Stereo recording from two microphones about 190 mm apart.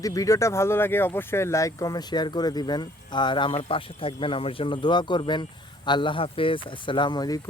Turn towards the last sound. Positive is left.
turn(degrees=20)  # may be behind; listen again after turning